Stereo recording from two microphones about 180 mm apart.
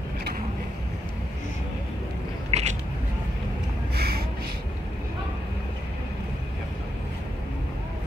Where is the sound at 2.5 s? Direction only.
40° right (ahead or behind).